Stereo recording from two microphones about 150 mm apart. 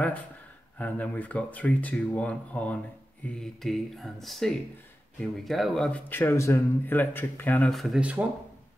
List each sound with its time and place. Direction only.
0.7 s speech: 10° left (ahead or behind)
7.7 s speech: centre (ahead or behind)